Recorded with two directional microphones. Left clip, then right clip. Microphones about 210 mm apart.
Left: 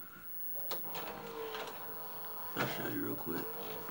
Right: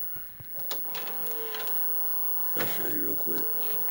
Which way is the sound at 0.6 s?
10° right (ahead or behind).